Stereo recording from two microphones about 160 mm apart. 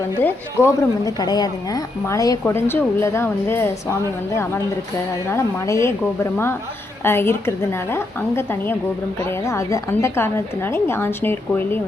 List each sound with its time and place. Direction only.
0.2 s a woman's voice: 15° left (ahead or behind)
5.3 s a woman's voice: 20° left (ahead or behind)
7.0 s a woman's voice: 15° left (ahead or behind)